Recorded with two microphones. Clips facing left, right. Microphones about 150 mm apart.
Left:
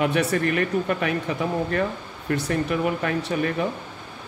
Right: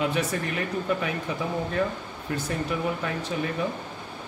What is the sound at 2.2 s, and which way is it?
Speech, 70° left (ahead or behind).